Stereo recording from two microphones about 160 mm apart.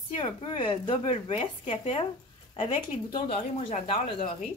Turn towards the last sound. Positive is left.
turn(degrees=35)  # may be behind; listen again after turning